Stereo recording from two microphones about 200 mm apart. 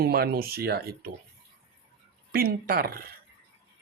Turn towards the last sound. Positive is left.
turn(degrees=-50)  # may be behind; listen again after turning